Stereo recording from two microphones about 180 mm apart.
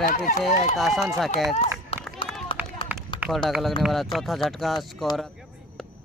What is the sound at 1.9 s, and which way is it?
Run, 30° left (ahead or behind).